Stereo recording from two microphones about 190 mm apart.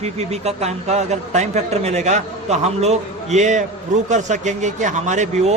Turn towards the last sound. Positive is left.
turn(degrees=-40)  # may be behind; listen again after turning